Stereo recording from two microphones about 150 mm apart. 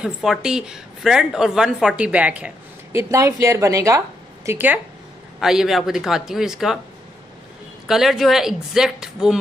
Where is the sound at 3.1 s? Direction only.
20° right (ahead or behind).